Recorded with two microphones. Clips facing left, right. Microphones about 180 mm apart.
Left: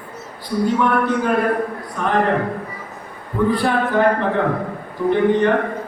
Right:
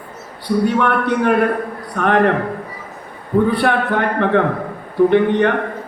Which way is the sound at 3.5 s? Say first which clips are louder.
Right 1 dB; 65° right (ahead or behind).